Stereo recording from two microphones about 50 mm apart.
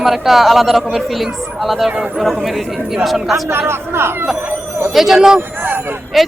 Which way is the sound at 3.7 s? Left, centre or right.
Right.